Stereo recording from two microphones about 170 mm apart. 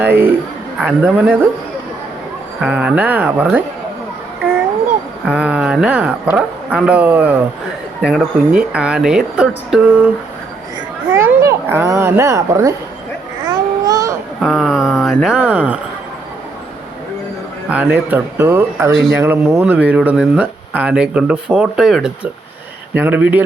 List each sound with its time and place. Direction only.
0.0 s a man's voice: 10° right (ahead or behind)
2.6 s speech: 10° right (ahead or behind)
5.3 s speech: 5° right (ahead or behind)
11.1 s a child's voice: 15° right (ahead or behind)
13.5 s babbling: 20° right (ahead or behind)
14.4 s speech: centre (ahead or behind)
18.1 s speech: 15° right (ahead or behind)